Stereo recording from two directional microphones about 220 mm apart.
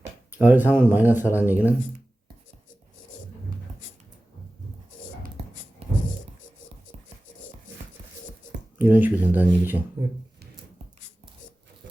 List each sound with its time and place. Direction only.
0.0 s speech: 10° right (ahead or behind)
8.8 s speech: 10° right (ahead or behind)